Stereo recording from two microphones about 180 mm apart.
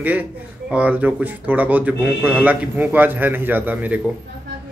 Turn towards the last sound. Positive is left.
turn(degrees=-10)  # may be behind; listen again after turning